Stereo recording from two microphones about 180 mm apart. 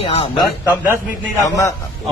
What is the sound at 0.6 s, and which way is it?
Speech, 15° left (ahead or behind).